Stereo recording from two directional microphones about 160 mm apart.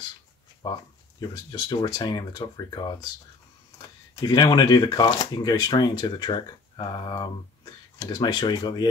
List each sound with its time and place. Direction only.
1.2 s speech: 25° left (ahead or behind)
4.1 s speech: 25° left (ahead or behind)